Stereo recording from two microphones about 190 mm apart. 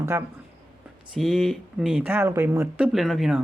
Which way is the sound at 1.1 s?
Centre (ahead or behind).